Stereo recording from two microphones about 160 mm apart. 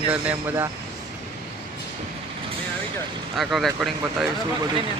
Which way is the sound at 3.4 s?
Centre (ahead or behind).